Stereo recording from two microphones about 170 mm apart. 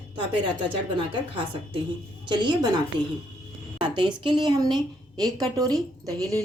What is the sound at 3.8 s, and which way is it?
A woman's voice, 30° right (ahead or behind).